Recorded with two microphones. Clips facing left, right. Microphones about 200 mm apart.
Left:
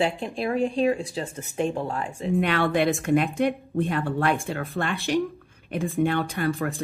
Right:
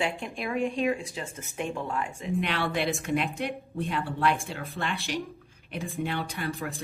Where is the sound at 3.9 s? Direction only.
50° left (ahead or behind).